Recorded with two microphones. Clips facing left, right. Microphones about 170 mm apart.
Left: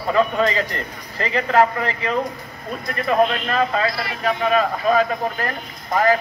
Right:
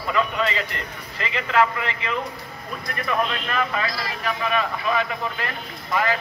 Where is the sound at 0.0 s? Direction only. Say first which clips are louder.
Left 5 dB; 40° left (ahead or behind).